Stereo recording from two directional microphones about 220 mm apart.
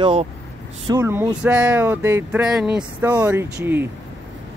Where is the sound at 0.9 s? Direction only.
10° right (ahead or behind).